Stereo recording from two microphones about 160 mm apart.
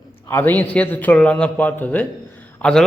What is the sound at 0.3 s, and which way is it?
A man's voice, 15° left (ahead or behind).